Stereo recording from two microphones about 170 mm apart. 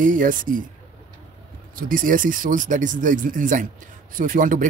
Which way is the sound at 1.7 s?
55° right (ahead or behind).